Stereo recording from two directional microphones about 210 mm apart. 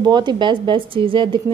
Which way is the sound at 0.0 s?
20° right (ahead or behind).